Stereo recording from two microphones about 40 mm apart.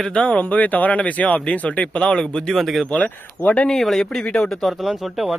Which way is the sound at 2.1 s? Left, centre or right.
Left.